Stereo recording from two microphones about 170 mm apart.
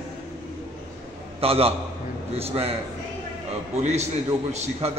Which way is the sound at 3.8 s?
40° right (ahead or behind).